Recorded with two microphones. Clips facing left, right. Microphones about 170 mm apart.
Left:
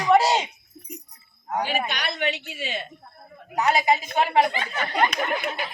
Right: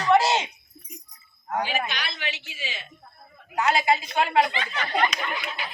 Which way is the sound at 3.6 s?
20° left (ahead or behind).